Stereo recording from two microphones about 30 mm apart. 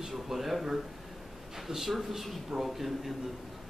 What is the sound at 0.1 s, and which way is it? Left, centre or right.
Speech, centre.